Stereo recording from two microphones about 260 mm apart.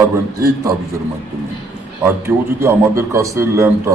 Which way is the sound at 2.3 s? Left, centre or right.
Centre.